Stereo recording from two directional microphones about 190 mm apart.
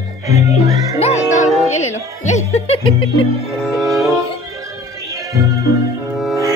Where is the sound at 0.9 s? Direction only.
35° left (ahead or behind).